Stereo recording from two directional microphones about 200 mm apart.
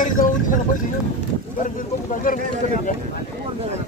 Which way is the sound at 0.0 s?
40° left (ahead or behind).